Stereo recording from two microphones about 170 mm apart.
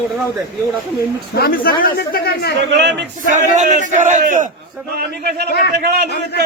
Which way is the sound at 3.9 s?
45° right (ahead or behind).